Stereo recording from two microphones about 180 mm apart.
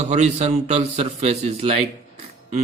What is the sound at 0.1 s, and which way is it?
A man's voice, 35° right (ahead or behind).